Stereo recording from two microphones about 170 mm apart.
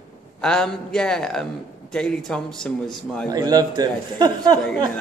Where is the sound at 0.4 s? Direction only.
5° left (ahead or behind).